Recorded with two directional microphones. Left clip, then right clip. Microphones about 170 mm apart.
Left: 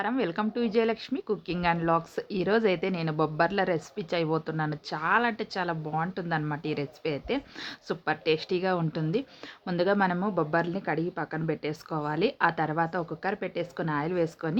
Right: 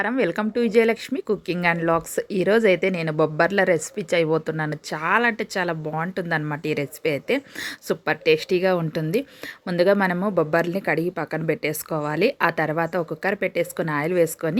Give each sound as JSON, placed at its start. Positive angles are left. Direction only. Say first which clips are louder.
{"t": 0.0, "sound": "speech", "louder": "right 6 dB", "side_deg": -20}